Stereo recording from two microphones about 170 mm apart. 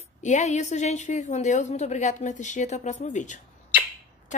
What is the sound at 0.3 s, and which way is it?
A woman's voice, 45° left (ahead or behind).